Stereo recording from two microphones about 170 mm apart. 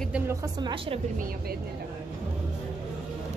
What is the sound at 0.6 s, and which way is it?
Speech, 30° right (ahead or behind).